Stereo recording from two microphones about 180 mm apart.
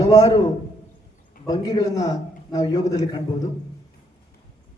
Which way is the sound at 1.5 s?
20° left (ahead or behind).